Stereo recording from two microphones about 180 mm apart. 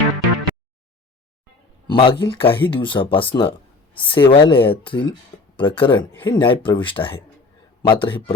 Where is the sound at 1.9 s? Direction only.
25° left (ahead or behind).